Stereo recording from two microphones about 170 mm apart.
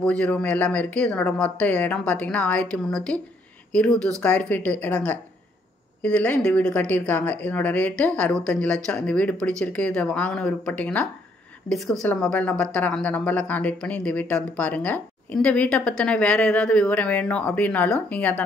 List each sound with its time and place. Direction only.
0.0 s a woman's voice: 5° left (ahead or behind)